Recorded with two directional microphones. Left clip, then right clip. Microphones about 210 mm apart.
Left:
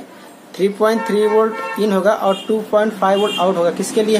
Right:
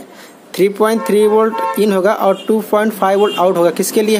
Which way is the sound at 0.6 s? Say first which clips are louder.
Right 3 dB; 50° right (ahead or behind).